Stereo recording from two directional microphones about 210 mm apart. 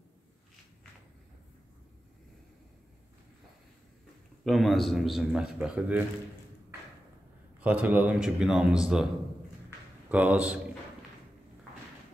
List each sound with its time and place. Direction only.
4.5 s a man's voice: centre (ahead or behind)
7.6 s a man's voice: 5° right (ahead or behind)